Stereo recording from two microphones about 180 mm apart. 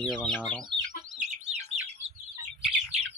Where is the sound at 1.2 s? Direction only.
40° right (ahead or behind).